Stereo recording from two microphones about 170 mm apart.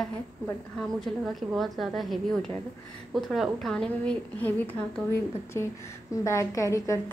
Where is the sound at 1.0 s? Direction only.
Centre (ahead or behind).